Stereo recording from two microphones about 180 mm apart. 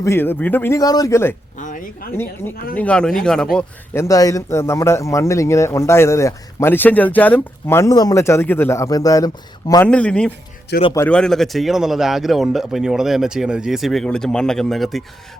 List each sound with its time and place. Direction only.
0.0 s a man's voice: 15° left (ahead or behind)
1.5 s speech: 45° left (ahead or behind)
2.1 s a man's voice: 10° left (ahead or behind)
3.9 s a man's voice: 15° left (ahead or behind)
9.8 s a man's voice: 5° left (ahead or behind)